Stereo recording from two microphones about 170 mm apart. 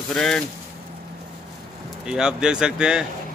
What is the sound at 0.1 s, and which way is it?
Speech, 5° left (ahead or behind).